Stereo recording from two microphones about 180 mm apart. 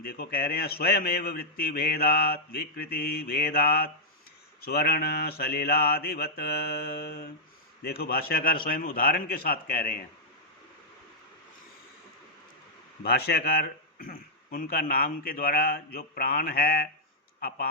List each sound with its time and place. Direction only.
0.0 s a man's voice: 60° left (ahead or behind)
13.0 s a man's voice: 60° left (ahead or behind)